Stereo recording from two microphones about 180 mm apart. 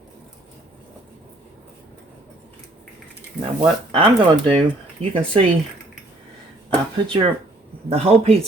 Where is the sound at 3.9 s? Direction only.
30° right (ahead or behind).